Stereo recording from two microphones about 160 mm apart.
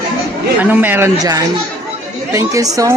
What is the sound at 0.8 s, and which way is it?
Speech, 10° right (ahead or behind).